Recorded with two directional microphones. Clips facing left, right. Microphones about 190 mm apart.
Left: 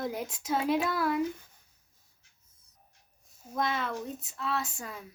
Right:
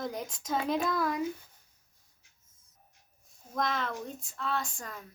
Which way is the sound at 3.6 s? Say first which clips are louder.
Left 1 dB; 5° left (ahead or behind).